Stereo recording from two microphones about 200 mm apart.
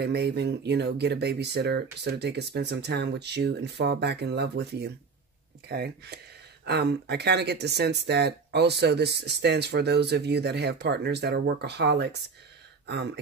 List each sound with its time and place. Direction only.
0.0 s speech: 55° right (ahead or behind)